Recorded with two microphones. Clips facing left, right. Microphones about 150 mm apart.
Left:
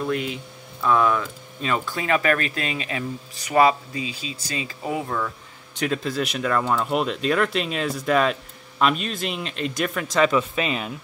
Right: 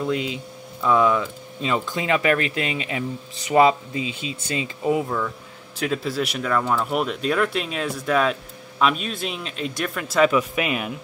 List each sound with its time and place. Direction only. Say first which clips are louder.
0.1 s speech: right 1 dB; 20° right (ahead or behind)
4.1 s speech: right 3 dB; 35° left (ahead or behind)
5.8 s speech: even; 5° right (ahead or behind)